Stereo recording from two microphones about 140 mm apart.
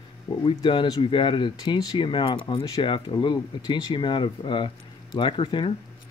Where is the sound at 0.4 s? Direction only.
35° left (ahead or behind).